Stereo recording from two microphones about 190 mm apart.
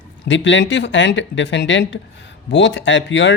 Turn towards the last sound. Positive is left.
turn(degrees=70)  # may be behind; listen again after turning